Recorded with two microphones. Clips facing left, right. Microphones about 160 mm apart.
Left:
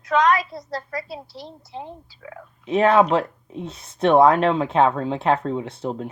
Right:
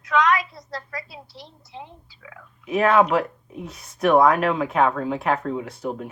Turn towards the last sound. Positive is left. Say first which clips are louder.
# left 1 dB
turn(degrees=25)  # may be behind; listen again after turning